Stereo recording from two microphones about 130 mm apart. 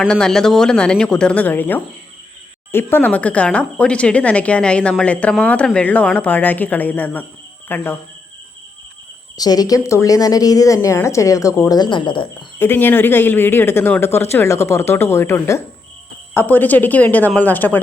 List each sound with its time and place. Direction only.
0.1 s speech: 5° left (ahead or behind)
9.4 s speech: 30° left (ahead or behind)
12.5 s speech: 15° left (ahead or behind)